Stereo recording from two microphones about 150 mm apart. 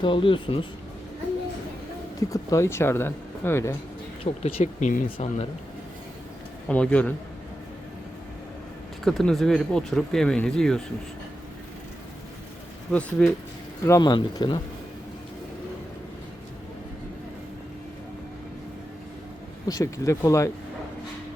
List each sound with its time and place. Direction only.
0.0 s speech: 35° left (ahead or behind)
2.3 s speech: 20° left (ahead or behind)
4.2 s speech: 40° left (ahead or behind)
6.7 s speech: 10° left (ahead or behind)
9.0 s speech: centre (ahead or behind)
12.9 s speech: 10° left (ahead or behind)
13.8 s speech: 25° left (ahead or behind)
19.6 s speech: 20° left (ahead or behind)